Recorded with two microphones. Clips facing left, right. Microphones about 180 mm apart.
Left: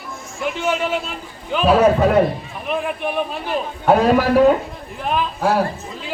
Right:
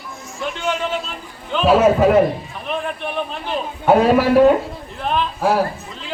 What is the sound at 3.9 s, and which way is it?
Speech, 5° right (ahead or behind).